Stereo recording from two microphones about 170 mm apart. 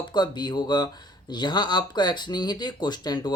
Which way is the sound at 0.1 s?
25° left (ahead or behind).